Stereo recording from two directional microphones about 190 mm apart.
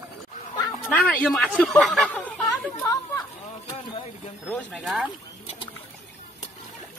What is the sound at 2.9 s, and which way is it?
Chatter, 20° left (ahead or behind).